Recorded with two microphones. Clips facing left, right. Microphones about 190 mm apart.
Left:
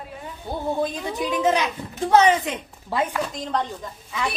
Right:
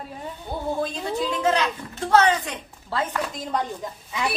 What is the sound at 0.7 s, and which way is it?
A woman's voice, 15° left (ahead or behind).